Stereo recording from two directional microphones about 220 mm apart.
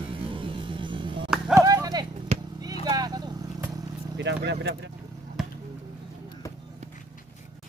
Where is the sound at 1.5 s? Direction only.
15° right (ahead or behind).